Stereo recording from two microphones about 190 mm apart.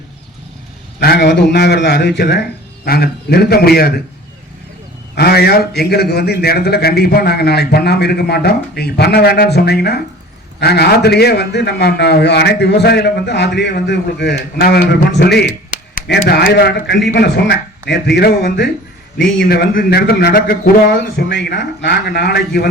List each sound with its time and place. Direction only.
0.9 s a man's voice: 60° left (ahead or behind)
5.1 s a man's voice: 55° left (ahead or behind)